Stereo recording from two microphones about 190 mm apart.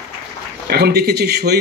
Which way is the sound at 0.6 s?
55° right (ahead or behind).